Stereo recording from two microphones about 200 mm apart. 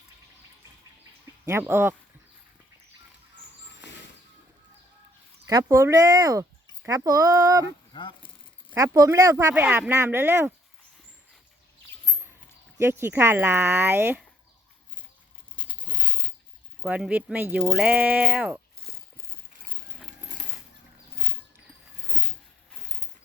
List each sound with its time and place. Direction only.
1.5 s speech: 10° right (ahead or behind)
5.5 s speech: 15° right (ahead or behind)
7.6 s speech: 25° left (ahead or behind)
8.7 s speech: 15° right (ahead or behind)
12.7 s speech: 15° right (ahead or behind)
15.8 s a sound: 5° left (ahead or behind)
16.8 s speech: 5° right (ahead or behind)